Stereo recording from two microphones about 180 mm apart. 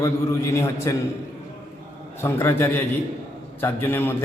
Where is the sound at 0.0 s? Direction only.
15° left (ahead or behind).